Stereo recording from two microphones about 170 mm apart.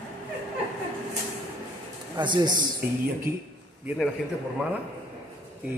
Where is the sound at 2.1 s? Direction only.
25° right (ahead or behind).